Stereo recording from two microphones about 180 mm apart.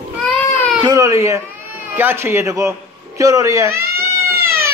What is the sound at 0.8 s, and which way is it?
A man's voice, 20° right (ahead or behind).